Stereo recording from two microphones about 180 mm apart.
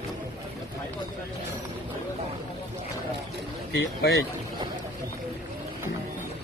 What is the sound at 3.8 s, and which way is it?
Speech, 70° left (ahead or behind).